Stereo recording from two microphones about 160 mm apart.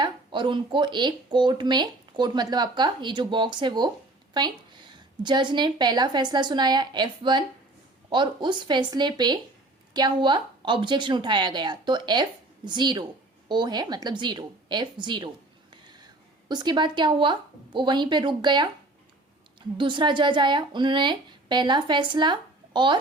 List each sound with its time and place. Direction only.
0.0 s a woman's voice: 30° right (ahead or behind)
16.5 s speech: 30° right (ahead or behind)
19.7 s speech: 30° right (ahead or behind)